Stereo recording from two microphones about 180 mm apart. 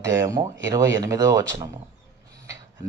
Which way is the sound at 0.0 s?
15° right (ahead or behind).